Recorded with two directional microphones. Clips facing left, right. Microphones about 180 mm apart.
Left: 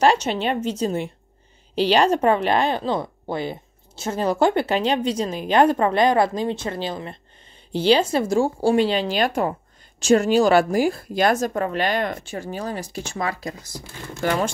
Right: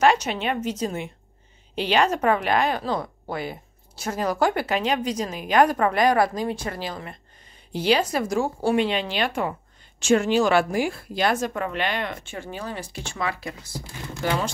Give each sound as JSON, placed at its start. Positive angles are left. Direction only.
{"t": 0.0, "sound": "speech", "side_deg": 30}
{"t": 13.7, "sound": "speech", "side_deg": 50}